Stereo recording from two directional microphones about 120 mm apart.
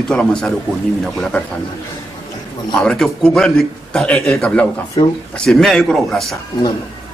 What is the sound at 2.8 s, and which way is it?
A man's voice, 5° left (ahead or behind).